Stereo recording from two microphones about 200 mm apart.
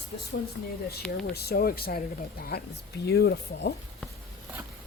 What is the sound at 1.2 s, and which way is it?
Speech, 50° left (ahead or behind).